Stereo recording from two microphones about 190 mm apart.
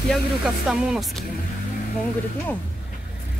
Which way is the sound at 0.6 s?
Centre (ahead or behind).